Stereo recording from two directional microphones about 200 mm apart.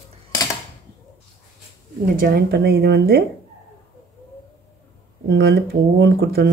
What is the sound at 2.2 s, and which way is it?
Speech, 50° right (ahead or behind).